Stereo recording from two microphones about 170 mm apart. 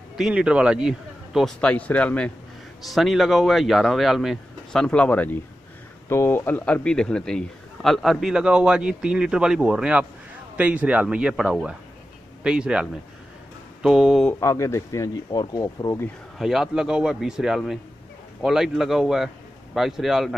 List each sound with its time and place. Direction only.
0.2 s a man's voice: 5° right (ahead or behind)
13.8 s a man's voice: 5° right (ahead or behind)
14.4 s speech: 15° left (ahead or behind)
16.3 s a man's voice: centre (ahead or behind)